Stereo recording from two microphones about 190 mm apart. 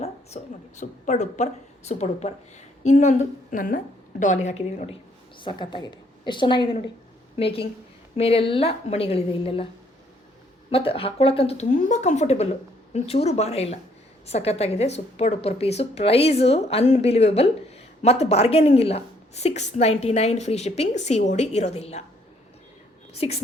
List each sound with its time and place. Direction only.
0.4 s a woman's voice: 40° left (ahead or behind)
10.7 s a woman's voice: 30° left (ahead or behind)
23.1 s a woman's voice: 35° left (ahead or behind)